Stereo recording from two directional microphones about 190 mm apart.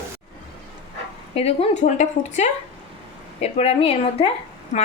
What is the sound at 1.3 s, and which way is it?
Speech, 30° left (ahead or behind).